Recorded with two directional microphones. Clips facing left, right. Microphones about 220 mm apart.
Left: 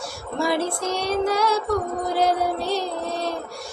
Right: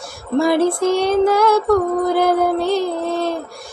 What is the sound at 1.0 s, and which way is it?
Music, 50° right (ahead or behind).